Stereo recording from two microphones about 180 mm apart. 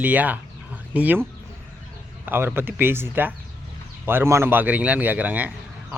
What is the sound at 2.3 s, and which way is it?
Speech, 10° right (ahead or behind).